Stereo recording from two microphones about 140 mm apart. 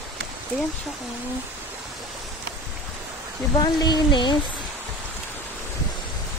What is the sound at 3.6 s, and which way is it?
Speech, 30° left (ahead or behind).